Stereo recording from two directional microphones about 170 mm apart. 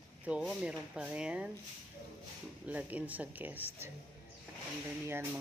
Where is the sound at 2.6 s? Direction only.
10° right (ahead or behind).